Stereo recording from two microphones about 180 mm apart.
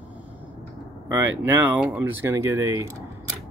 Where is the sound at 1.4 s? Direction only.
10° right (ahead or behind).